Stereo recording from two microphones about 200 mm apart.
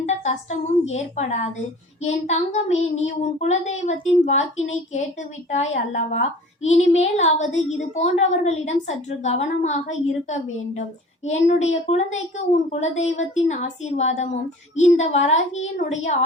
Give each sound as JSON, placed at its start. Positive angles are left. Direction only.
{"t": 0.0, "sound": "a woman's voice", "side_deg": 35}
{"t": 5.5, "sound": "a woman's voice", "side_deg": 35}